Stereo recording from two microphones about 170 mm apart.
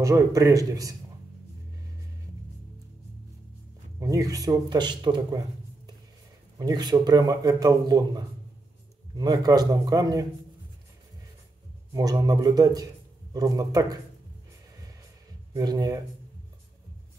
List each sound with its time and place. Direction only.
0.0 s a man's voice: 20° right (ahead or behind)
4.0 s a man's voice: 20° right (ahead or behind)
6.6 s a man's voice: 25° right (ahead or behind)
11.9 s a man's voice: 20° right (ahead or behind)
15.5 s a man's voice: 25° right (ahead or behind)